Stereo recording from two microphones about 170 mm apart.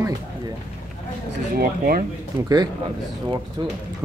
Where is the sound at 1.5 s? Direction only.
60° right (ahead or behind).